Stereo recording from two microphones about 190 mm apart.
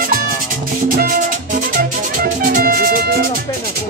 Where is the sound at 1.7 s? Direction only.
45° right (ahead or behind).